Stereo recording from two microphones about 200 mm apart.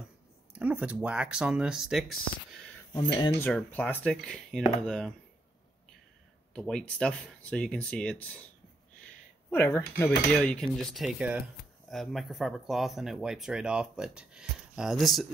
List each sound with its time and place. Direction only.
0.6 s speech: 5° right (ahead or behind)
3.0 s speech: 25° left (ahead or behind)
3.3 s speech: 10° left (ahead or behind)
6.5 s speech: 5° left (ahead or behind)
9.5 s speech: 10° left (ahead or behind)